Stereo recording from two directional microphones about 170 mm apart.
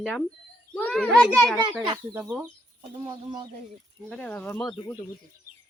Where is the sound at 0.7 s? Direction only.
10° left (ahead or behind).